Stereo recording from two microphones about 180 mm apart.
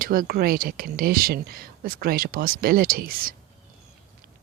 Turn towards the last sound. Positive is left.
turn(degrees=-55)  # may be behind; listen again after turning